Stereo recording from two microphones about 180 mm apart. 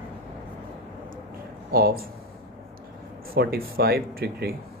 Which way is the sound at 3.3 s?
55° right (ahead or behind).